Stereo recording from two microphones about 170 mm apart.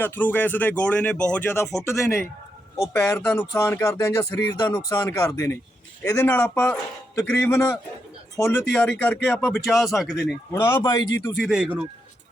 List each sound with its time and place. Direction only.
0.0 s speech: 10° left (ahead or behind)
2.7 s speech: 15° left (ahead or behind)
10.5 s speech: 15° left (ahead or behind)
11.2 s speech: centre (ahead or behind)